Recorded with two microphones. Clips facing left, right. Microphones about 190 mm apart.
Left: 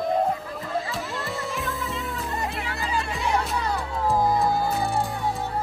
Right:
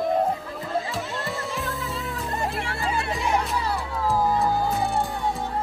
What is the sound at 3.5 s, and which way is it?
Music, centre (ahead or behind).